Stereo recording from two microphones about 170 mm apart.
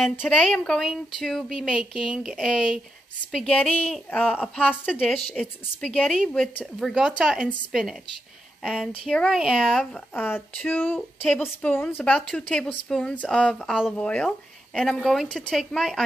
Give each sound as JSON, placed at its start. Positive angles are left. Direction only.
{"t": 0.2, "sound": "a woman's voice", "side_deg": 0}
{"t": 10.1, "sound": "a woman's voice", "side_deg": 10}